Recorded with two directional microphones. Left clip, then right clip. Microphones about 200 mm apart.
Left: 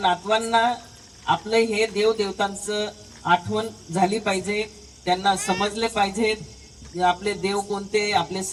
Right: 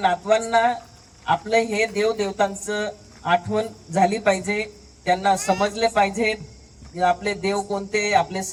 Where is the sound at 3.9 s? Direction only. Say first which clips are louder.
Right 3 dB; 35° right (ahead or behind).